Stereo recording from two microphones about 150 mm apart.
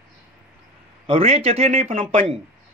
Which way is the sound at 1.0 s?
40° right (ahead or behind).